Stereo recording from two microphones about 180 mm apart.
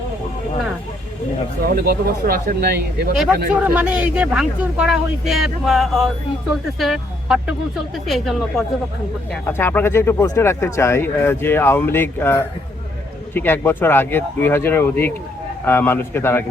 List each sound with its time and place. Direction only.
1.6 s speech: 55° right (ahead or behind)
3.5 s speech: 5° right (ahead or behind)
9.5 s speech: 15° left (ahead or behind)